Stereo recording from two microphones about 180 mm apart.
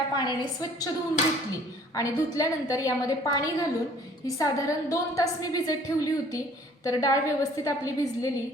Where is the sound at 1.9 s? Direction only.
20° left (ahead or behind).